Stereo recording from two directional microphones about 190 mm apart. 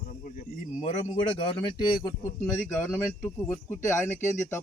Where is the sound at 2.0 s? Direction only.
10° left (ahead or behind).